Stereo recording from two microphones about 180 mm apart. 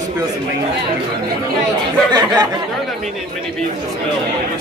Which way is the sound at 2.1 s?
25° right (ahead or behind).